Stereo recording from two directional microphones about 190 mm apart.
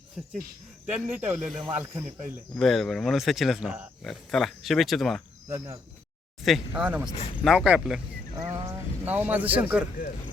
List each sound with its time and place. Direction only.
0.9 s speech: 5° right (ahead or behind)
2.6 s speech: centre (ahead or behind)
5.5 s speech: 15° right (ahead or behind)
7.1 s speech: 30° left (ahead or behind)
7.4 s speech: 5° right (ahead or behind)
8.4 s speech: 15° right (ahead or behind)